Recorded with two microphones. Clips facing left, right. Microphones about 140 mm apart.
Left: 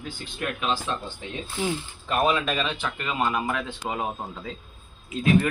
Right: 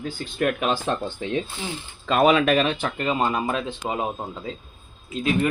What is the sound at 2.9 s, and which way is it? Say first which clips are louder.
Speech: right 1 dB; 30° right (ahead or behind).